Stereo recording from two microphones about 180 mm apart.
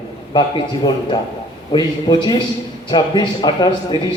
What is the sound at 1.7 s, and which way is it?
A man's voice, 25° left (ahead or behind).